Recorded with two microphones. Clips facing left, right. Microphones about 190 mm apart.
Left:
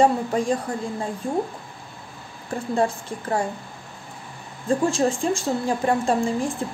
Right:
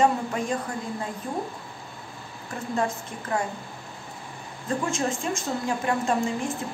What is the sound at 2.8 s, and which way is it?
Speech, 30° left (ahead or behind).